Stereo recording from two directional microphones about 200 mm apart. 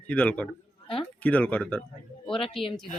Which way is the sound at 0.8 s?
25° left (ahead or behind).